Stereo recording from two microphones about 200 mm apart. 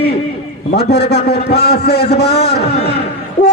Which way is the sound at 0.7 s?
55° left (ahead or behind).